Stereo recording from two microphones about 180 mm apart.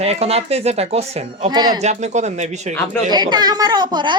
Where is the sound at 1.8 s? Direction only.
40° right (ahead or behind).